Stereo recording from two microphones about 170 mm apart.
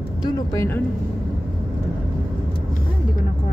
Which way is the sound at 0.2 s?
20° left (ahead or behind).